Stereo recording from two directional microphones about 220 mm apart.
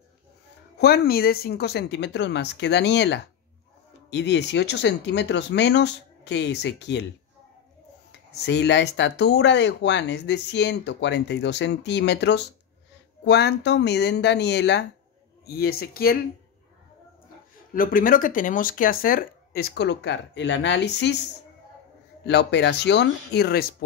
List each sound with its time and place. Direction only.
0.7 s speech: 45° left (ahead or behind)
8.3 s speech: 50° left (ahead or behind)
17.7 s speech: 40° left (ahead or behind)
22.2 s speech: 50° left (ahead or behind)